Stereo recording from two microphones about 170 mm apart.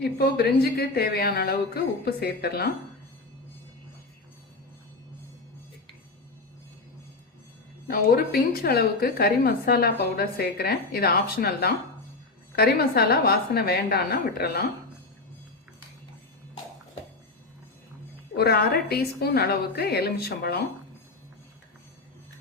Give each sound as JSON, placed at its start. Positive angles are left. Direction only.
{"t": 0.0, "sound": "speech", "side_deg": 70}
{"t": 7.9, "sound": "a woman's voice", "side_deg": 60}
{"t": 18.3, "sound": "speech", "side_deg": 65}